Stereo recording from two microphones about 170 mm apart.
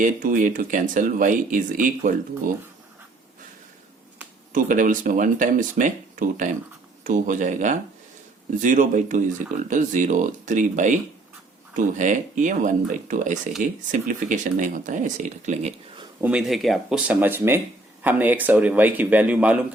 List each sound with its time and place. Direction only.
0.0 s speech: 50° right (ahead or behind)
4.5 s speech: 50° right (ahead or behind)
16.2 s a man's voice: 5° right (ahead or behind)